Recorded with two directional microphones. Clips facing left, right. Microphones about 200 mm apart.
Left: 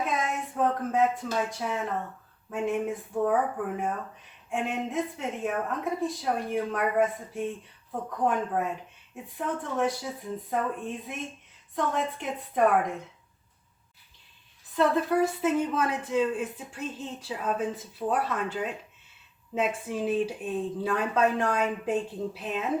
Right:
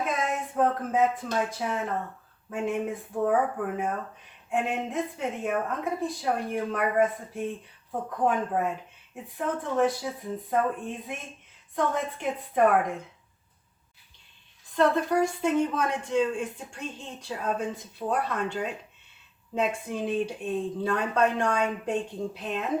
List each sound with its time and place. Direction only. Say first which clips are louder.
0.0 s a sound: right 1 dB; centre (ahead or behind)
2.5 s speech: even; centre (ahead or behind)
4.4 s speech: right 2 dB; centre (ahead or behind)
14.8 s speech: right 1 dB; 5° left (ahead or behind)